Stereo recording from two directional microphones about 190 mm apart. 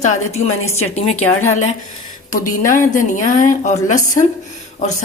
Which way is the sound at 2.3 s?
45° left (ahead or behind).